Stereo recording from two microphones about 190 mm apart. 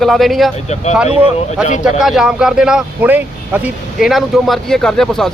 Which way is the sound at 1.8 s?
Centre (ahead or behind).